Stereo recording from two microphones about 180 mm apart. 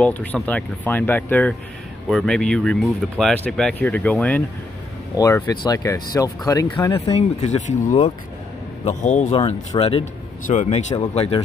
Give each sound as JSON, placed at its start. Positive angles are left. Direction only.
{"t": 0.0, "sound": "speech", "side_deg": 10}
{"t": 7.1, "sound": "a man's voice", "side_deg": 35}